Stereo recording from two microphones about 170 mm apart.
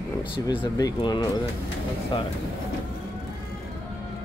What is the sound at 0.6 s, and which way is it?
Speech, 25° left (ahead or behind).